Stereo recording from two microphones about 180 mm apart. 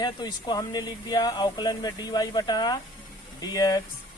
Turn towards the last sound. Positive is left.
turn(degrees=20)  # may be behind; listen again after turning